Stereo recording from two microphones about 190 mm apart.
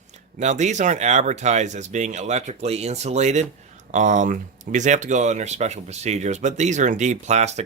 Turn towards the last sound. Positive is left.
turn(degrees=-35)  # may be behind; listen again after turning